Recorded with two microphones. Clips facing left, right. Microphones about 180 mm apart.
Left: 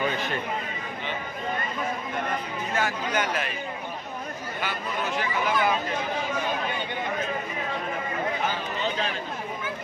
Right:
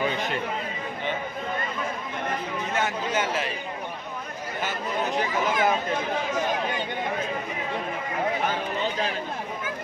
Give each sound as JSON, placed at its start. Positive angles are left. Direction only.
{"t": 2.7, "sound": "speech", "side_deg": -25}
{"t": 5.1, "sound": "speech", "side_deg": -40}